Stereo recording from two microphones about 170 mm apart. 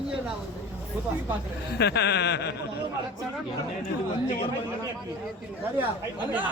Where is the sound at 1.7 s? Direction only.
75° left (ahead or behind).